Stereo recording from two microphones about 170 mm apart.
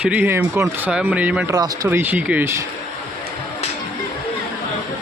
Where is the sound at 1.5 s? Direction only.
20° right (ahead or behind).